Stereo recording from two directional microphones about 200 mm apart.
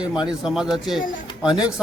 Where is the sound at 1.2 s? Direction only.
20° left (ahead or behind).